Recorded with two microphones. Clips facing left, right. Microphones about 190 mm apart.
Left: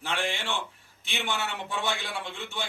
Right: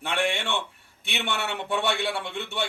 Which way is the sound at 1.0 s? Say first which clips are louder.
Right 2 dB; 65° right (ahead or behind).